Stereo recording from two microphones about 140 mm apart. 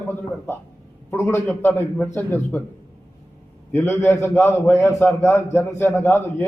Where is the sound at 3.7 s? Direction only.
15° left (ahead or behind).